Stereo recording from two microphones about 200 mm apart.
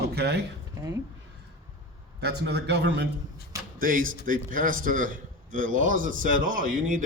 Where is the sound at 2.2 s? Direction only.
55° right (ahead or behind).